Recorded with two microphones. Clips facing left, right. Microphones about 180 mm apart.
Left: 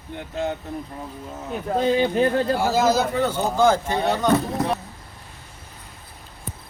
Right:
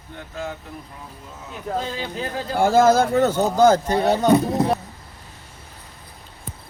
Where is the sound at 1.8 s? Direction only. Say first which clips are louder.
Left 12 dB; 60° left (ahead or behind).